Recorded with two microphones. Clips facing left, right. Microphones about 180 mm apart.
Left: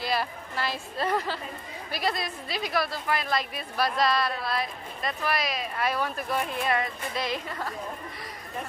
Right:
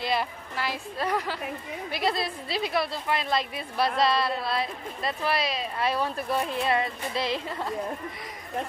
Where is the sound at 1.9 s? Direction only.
25° right (ahead or behind).